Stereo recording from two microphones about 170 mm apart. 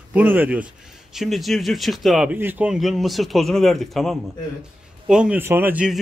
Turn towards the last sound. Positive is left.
turn(degrees=-5)  # may be behind; listen again after turning